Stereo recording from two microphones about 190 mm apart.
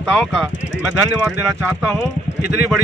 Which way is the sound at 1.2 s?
15° right (ahead or behind).